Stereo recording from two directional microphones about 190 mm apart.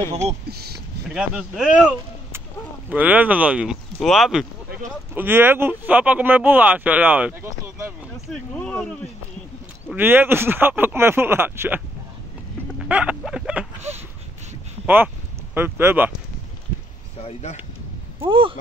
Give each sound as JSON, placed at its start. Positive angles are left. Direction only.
{"t": 0.5, "sound": "speech", "side_deg": -55}
{"t": 1.1, "sound": "speech", "side_deg": -5}
{"t": 8.3, "sound": "speech", "side_deg": 5}
{"t": 9.9, "sound": "speech", "side_deg": -10}
{"t": 12.8, "sound": "a sound", "side_deg": -5}
{"t": 15.5, "sound": "speech", "side_deg": -10}
{"t": 17.2, "sound": "speech", "side_deg": 35}
{"t": 18.3, "sound": "speech", "side_deg": -30}